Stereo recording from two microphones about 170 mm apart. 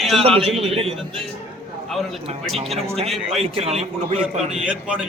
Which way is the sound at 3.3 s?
35° right (ahead or behind).